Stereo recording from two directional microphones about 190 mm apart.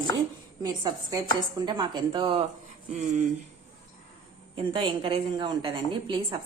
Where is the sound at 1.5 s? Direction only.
25° right (ahead or behind); by 3.2 s 40° right (ahead or behind).